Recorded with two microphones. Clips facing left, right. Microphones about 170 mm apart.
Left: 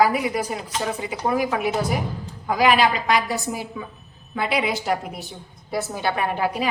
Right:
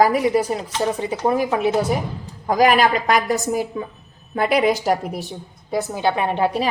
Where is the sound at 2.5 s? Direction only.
45° right (ahead or behind).